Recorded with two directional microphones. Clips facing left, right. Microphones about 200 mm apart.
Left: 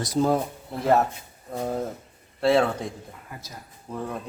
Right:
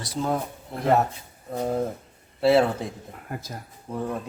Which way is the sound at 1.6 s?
Centre (ahead or behind).